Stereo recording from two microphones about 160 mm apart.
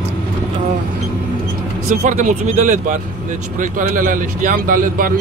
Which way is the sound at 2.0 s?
50° right (ahead or behind).